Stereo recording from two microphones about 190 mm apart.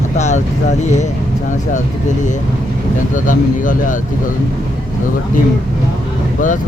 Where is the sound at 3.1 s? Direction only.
45° left (ahead or behind).